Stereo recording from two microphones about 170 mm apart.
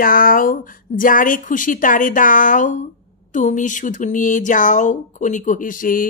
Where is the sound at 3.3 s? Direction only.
45° left (ahead or behind).